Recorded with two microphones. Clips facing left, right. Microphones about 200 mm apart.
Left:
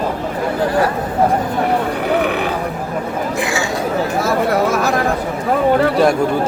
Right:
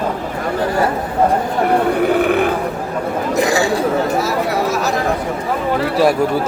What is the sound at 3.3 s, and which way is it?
Speech, 35° right (ahead or behind).